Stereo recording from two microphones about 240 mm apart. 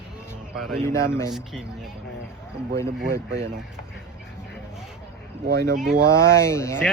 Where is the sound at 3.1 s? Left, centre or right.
Right.